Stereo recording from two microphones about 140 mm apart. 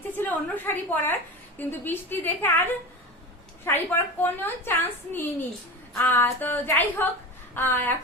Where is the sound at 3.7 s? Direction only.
15° left (ahead or behind).